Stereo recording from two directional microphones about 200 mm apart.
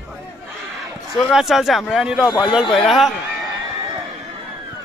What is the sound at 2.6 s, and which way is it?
Speech, 25° left (ahead or behind).